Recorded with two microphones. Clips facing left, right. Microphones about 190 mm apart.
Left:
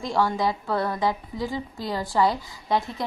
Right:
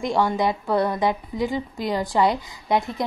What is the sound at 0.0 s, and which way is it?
A woman's voice, 20° right (ahead or behind).